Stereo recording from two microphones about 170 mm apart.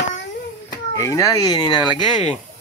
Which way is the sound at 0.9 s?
15° left (ahead or behind).